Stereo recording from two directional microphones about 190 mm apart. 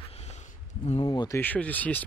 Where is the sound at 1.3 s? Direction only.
10° left (ahead or behind).